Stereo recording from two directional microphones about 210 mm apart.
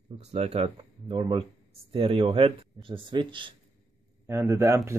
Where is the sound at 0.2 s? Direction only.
30° right (ahead or behind).